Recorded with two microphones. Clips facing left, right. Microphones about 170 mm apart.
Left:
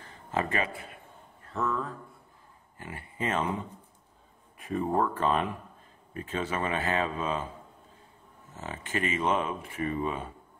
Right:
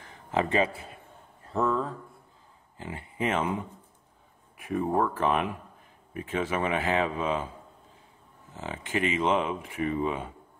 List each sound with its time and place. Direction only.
0.0 s a sound: 15° right (ahead or behind)
0.5 s a man's voice: 25° right (ahead or behind)
2.8 s speech: 20° right (ahead or behind)
8.5 s speech: 15° right (ahead or behind)